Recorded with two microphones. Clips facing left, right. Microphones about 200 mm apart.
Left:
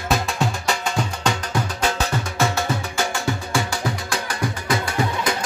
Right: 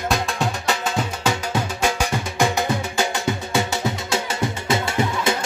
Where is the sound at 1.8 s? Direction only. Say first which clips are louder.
Right 1 dB; 15° right (ahead or behind).